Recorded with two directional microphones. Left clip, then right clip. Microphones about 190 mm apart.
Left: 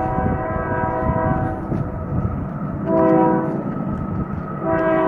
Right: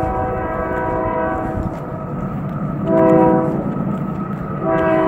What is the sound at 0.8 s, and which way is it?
Train, 20° right (ahead or behind).